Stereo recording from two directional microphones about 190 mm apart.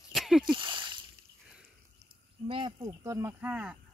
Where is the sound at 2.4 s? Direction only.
25° right (ahead or behind); by 3.7 s 10° right (ahead or behind).